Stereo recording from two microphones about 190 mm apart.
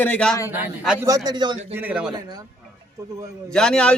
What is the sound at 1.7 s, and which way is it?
Speech, 10° right (ahead or behind).